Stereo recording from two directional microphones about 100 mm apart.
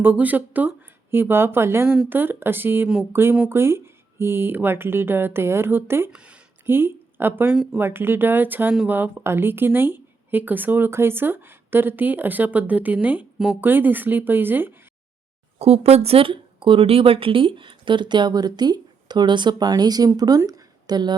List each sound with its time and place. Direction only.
0.0 s speech: 15° right (ahead or behind)
6.1 s speech: 10° right (ahead or behind)
6.7 s speech: 20° right (ahead or behind)
7.5 s speech: 5° right (ahead or behind)
7.8 s speech: 20° right (ahead or behind)
15.5 s speech: 90° right; by 20.4 s 40° right (ahead or behind)
20.4 s a sound: 40° right (ahead or behind)